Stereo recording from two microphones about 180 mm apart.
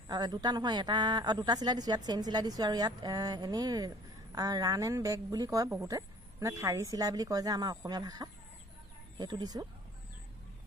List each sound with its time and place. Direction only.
0.1 s a woman's voice: 20° right (ahead or behind)